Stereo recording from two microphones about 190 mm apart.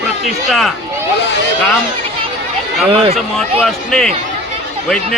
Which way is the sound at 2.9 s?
25° right (ahead or behind).